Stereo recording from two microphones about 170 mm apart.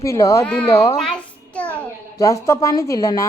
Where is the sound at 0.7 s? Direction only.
20° left (ahead or behind).